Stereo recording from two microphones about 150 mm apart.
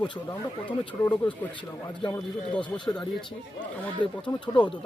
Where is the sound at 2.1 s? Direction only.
10° left (ahead or behind).